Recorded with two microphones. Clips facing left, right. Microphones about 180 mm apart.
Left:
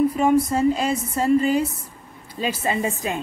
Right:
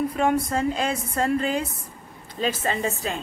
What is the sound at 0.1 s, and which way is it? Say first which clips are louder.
A woman's voice: left 4 dB; 5° left (ahead or behind).